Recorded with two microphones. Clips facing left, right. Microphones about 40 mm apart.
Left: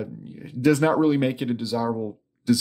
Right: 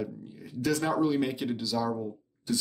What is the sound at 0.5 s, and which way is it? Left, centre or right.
Speech, left.